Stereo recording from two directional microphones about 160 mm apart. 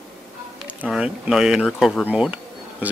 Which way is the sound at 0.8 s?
5° right (ahead or behind).